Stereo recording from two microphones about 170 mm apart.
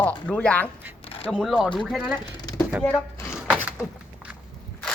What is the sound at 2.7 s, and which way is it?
Speech, centre (ahead or behind).